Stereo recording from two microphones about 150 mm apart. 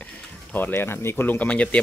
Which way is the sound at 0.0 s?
10° left (ahead or behind).